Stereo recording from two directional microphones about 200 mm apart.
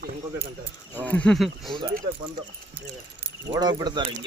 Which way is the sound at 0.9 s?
5° left (ahead or behind).